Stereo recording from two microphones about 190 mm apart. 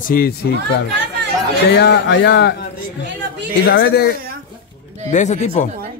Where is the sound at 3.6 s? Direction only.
60° left (ahead or behind).